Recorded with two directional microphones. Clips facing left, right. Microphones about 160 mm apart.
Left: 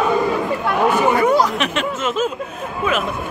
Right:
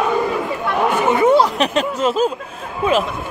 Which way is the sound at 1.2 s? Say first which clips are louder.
Right 2 dB; 25° right (ahead or behind).